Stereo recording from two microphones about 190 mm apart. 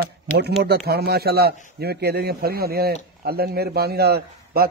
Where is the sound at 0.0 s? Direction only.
60° right (ahead or behind).